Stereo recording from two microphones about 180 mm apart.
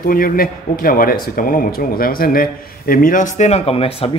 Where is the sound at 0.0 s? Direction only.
55° left (ahead or behind).